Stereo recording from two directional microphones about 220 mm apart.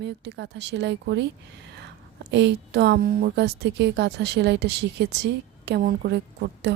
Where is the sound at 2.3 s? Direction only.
50° right (ahead or behind).